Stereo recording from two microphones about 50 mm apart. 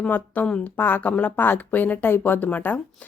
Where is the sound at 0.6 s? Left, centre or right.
Left.